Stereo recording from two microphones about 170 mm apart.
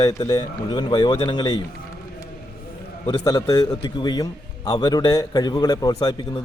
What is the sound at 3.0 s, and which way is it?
A man's voice, 20° left (ahead or behind).